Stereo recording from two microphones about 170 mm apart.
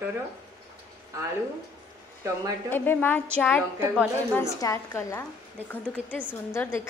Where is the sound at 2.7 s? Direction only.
10° left (ahead or behind).